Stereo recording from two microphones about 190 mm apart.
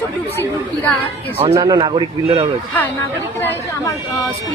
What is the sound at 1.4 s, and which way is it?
A man's voice, 25° right (ahead or behind).